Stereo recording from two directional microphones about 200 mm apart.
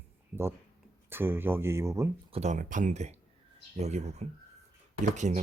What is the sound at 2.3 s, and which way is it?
Speech, 35° right (ahead or behind).